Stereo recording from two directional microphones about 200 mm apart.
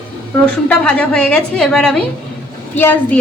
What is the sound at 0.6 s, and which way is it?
A woman's voice, 5° left (ahead or behind).